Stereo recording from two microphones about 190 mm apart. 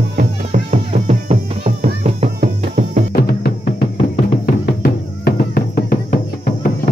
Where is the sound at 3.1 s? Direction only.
50° left (ahead or behind).